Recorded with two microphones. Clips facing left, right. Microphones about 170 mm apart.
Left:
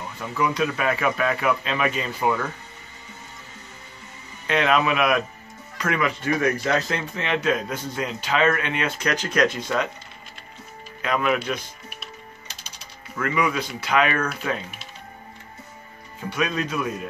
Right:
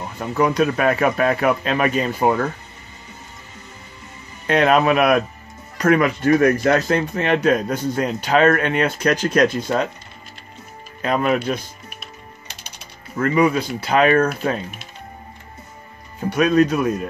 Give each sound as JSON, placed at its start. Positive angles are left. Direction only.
{"t": 0.2, "sound": "speech", "side_deg": -45}
{"t": 4.5, "sound": "speech", "side_deg": -45}
{"t": 11.0, "sound": "speech", "side_deg": -35}
{"t": 11.9, "sound": "music", "side_deg": -50}
{"t": 13.1, "sound": "speech", "side_deg": -35}
{"t": 16.2, "sound": "speech", "side_deg": -45}